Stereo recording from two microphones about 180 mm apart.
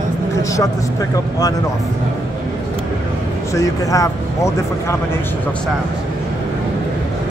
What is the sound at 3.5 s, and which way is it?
Speech, 20° left (ahead or behind).